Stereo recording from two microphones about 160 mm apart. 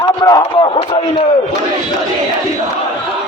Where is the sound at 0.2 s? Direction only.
30° left (ahead or behind).